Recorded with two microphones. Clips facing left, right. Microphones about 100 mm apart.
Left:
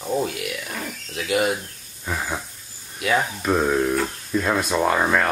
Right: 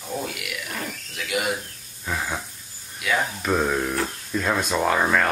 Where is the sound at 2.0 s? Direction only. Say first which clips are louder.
Left 1 dB; centre (ahead or behind).